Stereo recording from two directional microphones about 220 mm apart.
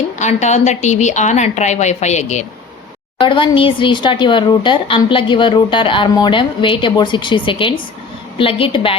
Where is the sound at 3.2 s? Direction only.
20° left (ahead or behind).